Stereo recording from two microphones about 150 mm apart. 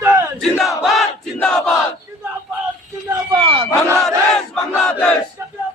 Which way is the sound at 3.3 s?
35° right (ahead or behind).